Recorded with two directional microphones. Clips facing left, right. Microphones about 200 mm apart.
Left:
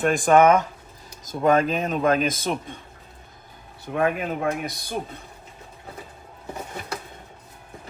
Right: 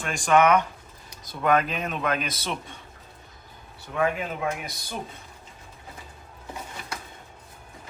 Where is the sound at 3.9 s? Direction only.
55° left (ahead or behind).